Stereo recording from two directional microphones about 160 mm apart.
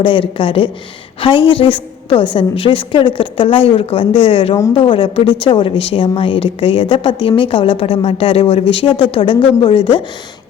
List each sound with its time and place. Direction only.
0.0 s a woman's voice: 30° left (ahead or behind)